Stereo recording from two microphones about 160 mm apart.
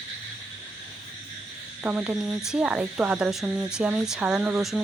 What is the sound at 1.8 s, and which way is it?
Speech, 10° right (ahead or behind).